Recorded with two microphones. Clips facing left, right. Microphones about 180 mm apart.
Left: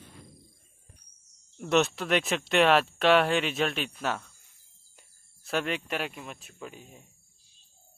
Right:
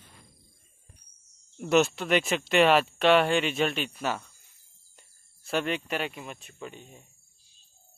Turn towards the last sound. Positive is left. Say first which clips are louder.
# right 1 dB
turn(degrees=5)  # may be behind; listen again after turning